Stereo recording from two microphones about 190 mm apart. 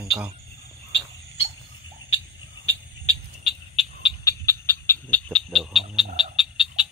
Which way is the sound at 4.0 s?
15° left (ahead or behind).